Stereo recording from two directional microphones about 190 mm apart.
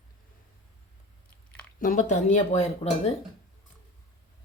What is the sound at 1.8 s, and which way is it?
Speech, 45° left (ahead or behind).